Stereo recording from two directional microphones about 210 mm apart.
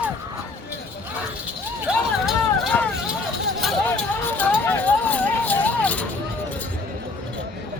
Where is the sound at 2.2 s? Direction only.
Centre (ahead or behind).